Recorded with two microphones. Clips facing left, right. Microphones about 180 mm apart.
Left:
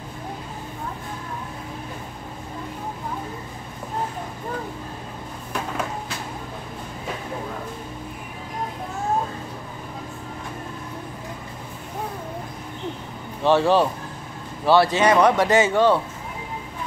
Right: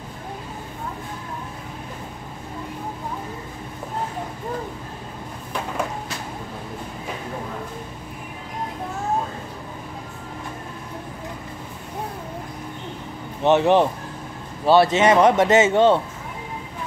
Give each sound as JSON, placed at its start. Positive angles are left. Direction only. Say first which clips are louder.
{"t": 13.4, "sound": "speech", "louder": "right 1 dB", "side_deg": -20}